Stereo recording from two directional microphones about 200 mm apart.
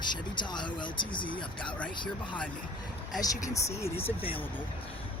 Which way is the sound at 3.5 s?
15° left (ahead or behind).